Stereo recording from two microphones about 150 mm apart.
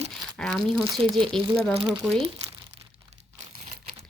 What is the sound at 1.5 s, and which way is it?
Speech, 5° left (ahead or behind).